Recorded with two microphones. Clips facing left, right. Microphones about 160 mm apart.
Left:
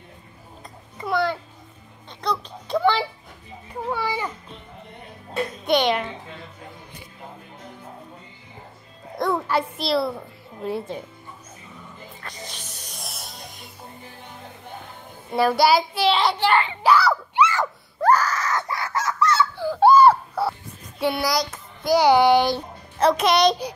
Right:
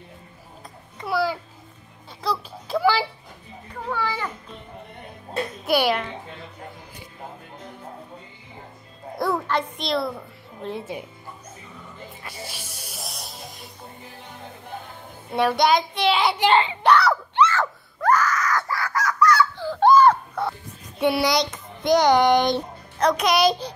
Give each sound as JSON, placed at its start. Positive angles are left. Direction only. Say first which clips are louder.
{"t": 0.9, "sound": "babbling", "louder": "left 1 dB", "side_deg": -5}
{"t": 2.2, "sound": "a sound", "louder": "even", "side_deg": -5}
{"t": 3.7, "sound": "children playing", "louder": "left 1 dB", "side_deg": 15}
{"t": 5.7, "sound": "a sound", "louder": "left 1 dB", "side_deg": -5}
{"t": 9.5, "sound": "a sound", "louder": "left 2 dB", "side_deg": 5}
{"t": 12.2, "sound": "music", "louder": "even", "side_deg": -5}
{"t": 15.3, "sound": "a child's voice", "louder": "left 1 dB", "side_deg": 5}
{"t": 16.3, "sound": "a child's voice", "louder": "right 1 dB", "side_deg": -20}
{"t": 16.8, "sound": "a sound", "louder": "even", "side_deg": 5}
{"t": 18.0, "sound": "wail", "louder": "left 1 dB", "side_deg": 30}
{"t": 19.5, "sound": "crying", "louder": "left 1 dB", "side_deg": 10}
{"t": 21.0, "sound": "a child's voice", "louder": "right 2 dB", "side_deg": 0}